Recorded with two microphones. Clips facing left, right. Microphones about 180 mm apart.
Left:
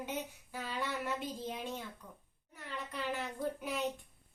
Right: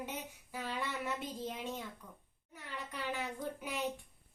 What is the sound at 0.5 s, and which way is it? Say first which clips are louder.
Female singing: left 1 dB; 10° right (ahead or behind).